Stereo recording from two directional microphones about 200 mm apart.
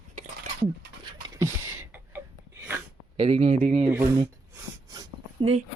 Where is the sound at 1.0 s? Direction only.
15° right (ahead or behind).